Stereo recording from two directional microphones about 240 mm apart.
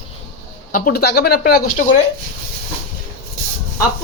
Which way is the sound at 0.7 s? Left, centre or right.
Left.